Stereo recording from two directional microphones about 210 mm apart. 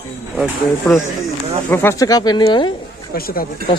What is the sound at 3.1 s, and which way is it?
Speech, 45° left (ahead or behind).